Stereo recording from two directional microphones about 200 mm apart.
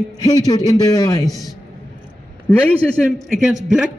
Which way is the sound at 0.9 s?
20° left (ahead or behind).